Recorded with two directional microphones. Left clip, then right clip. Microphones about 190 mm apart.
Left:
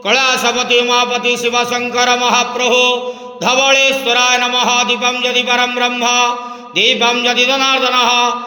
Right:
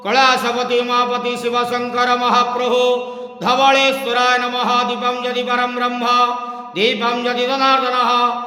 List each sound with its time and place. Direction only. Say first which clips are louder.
0.1 s a man's voice: left 1 dB; 5° left (ahead or behind)